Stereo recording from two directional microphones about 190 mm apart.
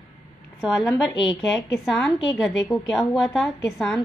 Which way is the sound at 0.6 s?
5° right (ahead or behind).